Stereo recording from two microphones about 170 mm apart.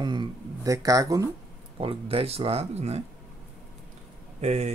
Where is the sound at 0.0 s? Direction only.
25° right (ahead or behind).